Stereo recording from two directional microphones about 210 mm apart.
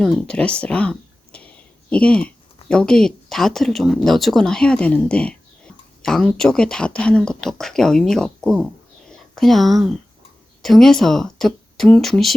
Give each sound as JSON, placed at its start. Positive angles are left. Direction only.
{"t": 0.0, "sound": "speech", "side_deg": 5}